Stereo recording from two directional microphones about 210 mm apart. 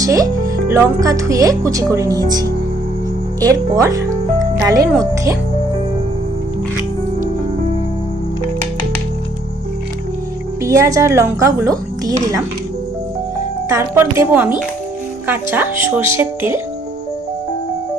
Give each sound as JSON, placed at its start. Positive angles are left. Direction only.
{"t": 0.0, "sound": "speech", "side_deg": -15}
{"t": 10.6, "sound": "speech", "side_deg": -15}
{"t": 13.7, "sound": "speech", "side_deg": -10}